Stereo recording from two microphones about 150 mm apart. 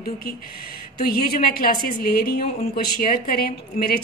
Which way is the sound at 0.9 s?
90° left.